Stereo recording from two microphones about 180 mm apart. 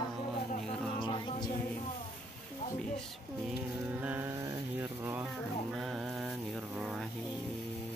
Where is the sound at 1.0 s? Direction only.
25° left (ahead or behind).